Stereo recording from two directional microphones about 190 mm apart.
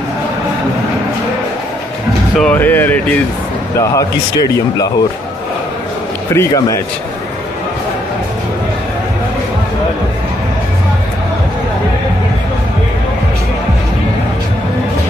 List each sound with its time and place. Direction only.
2.3 s speech: 5° left (ahead or behind)
6.3 s speech: 15° left (ahead or behind)